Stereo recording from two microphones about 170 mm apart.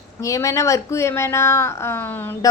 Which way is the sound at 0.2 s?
20° left (ahead or behind).